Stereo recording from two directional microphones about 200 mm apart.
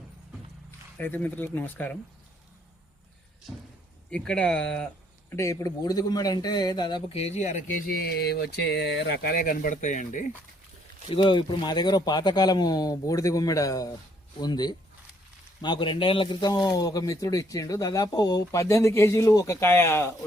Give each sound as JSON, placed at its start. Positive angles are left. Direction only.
{"t": 0.9, "sound": "speech", "side_deg": 10}
{"t": 4.1, "sound": "speech", "side_deg": 5}
{"t": 5.3, "sound": "speech", "side_deg": 15}
{"t": 8.0, "sound": "a sound", "side_deg": 55}
{"t": 9.1, "sound": "speech", "side_deg": 50}
{"t": 11.1, "sound": "speech", "side_deg": 25}